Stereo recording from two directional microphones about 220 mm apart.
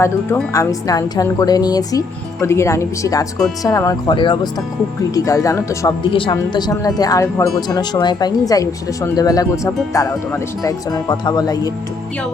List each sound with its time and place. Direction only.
0.0 s speech: 10° left (ahead or behind)